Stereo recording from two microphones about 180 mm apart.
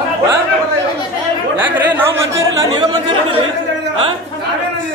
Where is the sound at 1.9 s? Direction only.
15° right (ahead or behind).